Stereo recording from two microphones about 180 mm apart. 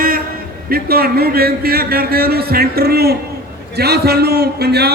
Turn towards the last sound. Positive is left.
turn(degrees=-65)  # may be behind; listen again after turning